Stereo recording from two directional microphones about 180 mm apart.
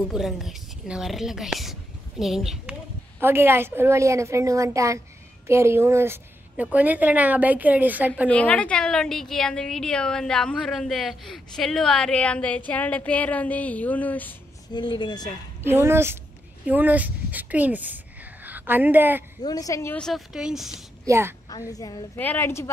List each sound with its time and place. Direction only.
0.1 s a woman's voice: centre (ahead or behind)
8.3 s a woman's voice: 10° left (ahead or behind)
14.7 s a woman's voice: 25° left (ahead or behind)
15.6 s a woman's voice: 15° right (ahead or behind)
19.4 s a woman's voice: 20° left (ahead or behind)
20.0 s a woman's voice: centre (ahead or behind)
21.0 s a woman's voice: 15° right (ahead or behind)
21.5 s a woman's voice: 20° left (ahead or behind)